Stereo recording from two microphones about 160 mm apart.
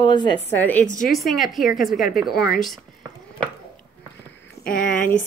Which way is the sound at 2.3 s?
75° left (ahead or behind).